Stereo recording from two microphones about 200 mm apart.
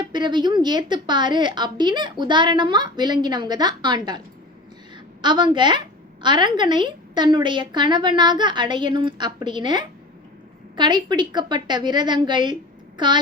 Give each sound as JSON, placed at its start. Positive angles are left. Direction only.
{"t": 0.0, "sound": "a woman's voice", "side_deg": -20}
{"t": 5.2, "sound": "a woman's voice", "side_deg": -20}